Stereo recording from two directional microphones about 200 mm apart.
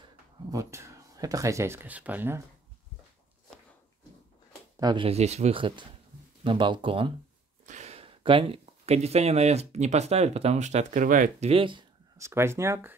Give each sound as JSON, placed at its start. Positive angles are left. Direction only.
{"t": 0.5, "sound": "speech", "side_deg": -15}
{"t": 4.7, "sound": "speech", "side_deg": -20}
{"t": 7.6, "sound": "speech", "side_deg": -35}
{"t": 12.2, "sound": "speech", "side_deg": -15}